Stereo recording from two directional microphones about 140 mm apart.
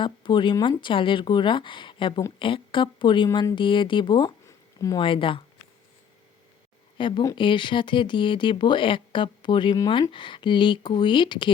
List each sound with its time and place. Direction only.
0.0 s speech: 35° left (ahead or behind)
4.4 s a sound: 25° left (ahead or behind)
4.9 s speech: 40° left (ahead or behind)
7.0 s speech: 35° left (ahead or behind)